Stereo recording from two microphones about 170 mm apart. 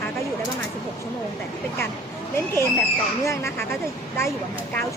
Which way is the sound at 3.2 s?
15° left (ahead or behind).